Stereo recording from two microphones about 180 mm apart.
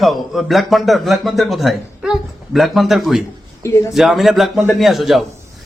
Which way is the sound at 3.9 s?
Centre (ahead or behind).